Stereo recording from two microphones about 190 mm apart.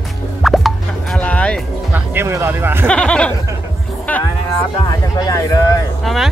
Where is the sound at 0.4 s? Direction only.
Centre (ahead or behind).